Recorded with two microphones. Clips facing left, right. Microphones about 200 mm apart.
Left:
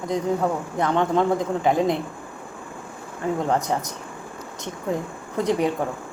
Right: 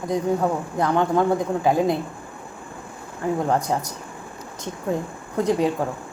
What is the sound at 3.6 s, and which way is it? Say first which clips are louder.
Speech: right 1 dB; 20° left (ahead or behind).